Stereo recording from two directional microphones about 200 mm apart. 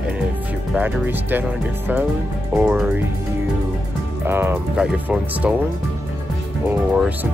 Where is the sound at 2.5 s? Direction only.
5° right (ahead or behind).